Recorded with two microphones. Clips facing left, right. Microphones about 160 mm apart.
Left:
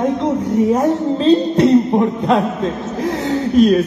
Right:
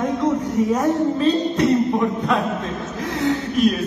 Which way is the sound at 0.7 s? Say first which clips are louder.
Left 3 dB; 30° left (ahead or behind).